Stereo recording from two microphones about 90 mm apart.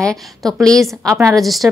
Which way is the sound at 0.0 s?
5° left (ahead or behind).